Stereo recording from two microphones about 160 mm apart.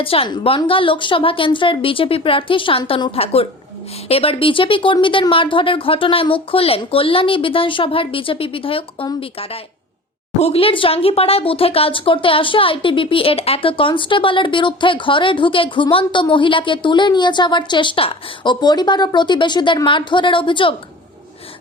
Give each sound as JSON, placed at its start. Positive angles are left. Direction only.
{"t": 0.0, "sound": "speech", "side_deg": 35}